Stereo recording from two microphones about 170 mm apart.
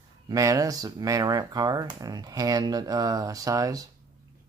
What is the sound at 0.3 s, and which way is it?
Speech, 20° right (ahead or behind).